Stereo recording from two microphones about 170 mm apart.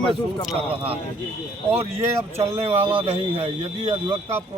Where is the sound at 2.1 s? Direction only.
35° right (ahead or behind).